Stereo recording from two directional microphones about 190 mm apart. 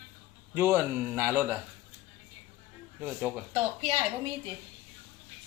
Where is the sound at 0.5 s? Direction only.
10° right (ahead or behind).